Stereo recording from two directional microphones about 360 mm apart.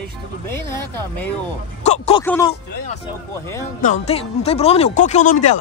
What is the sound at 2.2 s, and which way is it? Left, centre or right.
Speech, centre.